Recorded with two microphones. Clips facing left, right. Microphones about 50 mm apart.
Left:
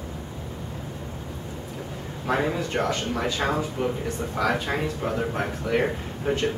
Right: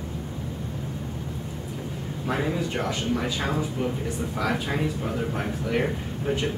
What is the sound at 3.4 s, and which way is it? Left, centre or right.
Speech, left.